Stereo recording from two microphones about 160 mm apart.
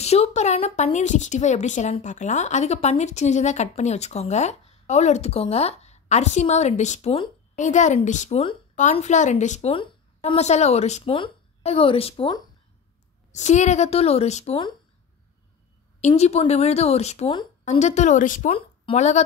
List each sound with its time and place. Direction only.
0.0 s a woman's voice: 40° left (ahead or behind)
13.3 s a woman's voice: 45° left (ahead or behind)
16.1 s a woman's voice: 40° left (ahead or behind)
18.5 s speech: 40° left (ahead or behind)